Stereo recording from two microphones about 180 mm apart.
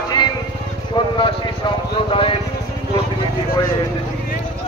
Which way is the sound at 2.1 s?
30° left (ahead or behind).